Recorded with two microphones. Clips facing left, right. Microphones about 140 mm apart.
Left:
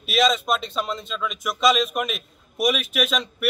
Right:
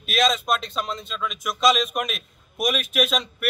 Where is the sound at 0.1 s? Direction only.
Centre (ahead or behind).